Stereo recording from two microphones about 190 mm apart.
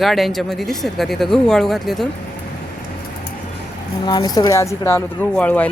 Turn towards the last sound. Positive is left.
turn(degrees=5)  # may be behind; listen again after turning